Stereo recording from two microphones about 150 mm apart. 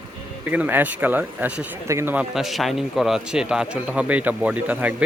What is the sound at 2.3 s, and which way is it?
A man's voice, centre (ahead or behind).